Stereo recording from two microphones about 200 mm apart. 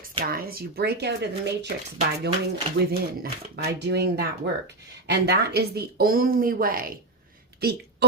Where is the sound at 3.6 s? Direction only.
55° right (ahead or behind).